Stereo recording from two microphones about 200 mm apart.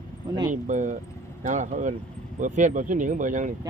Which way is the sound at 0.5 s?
40° right (ahead or behind).